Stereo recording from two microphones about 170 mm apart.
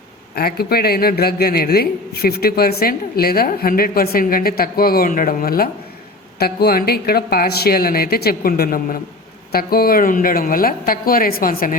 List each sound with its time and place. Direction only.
0.3 s a man's voice: 65° left (ahead or behind)